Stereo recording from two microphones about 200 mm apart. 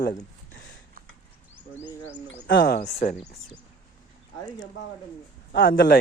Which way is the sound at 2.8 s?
35° left (ahead or behind).